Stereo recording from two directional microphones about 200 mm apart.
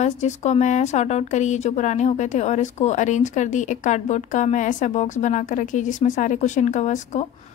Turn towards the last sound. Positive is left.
turn(degrees=35)  # may be behind; listen again after turning